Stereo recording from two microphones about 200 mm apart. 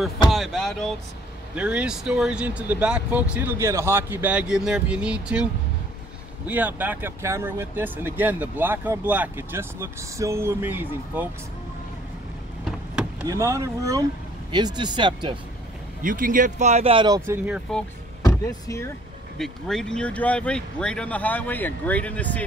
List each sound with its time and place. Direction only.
0.3 s a sound: centre (ahead or behind)
1.5 s speech: 5° right (ahead or behind)
13.3 s speech: 15° right (ahead or behind)
16.0 s speech: 40° right (ahead or behind); by 17.4 s 20° right (ahead or behind)
17.5 s speech: 5° left (ahead or behind)
18.2 s speech: 15° left (ahead or behind)
19.3 s speech: centre (ahead or behind)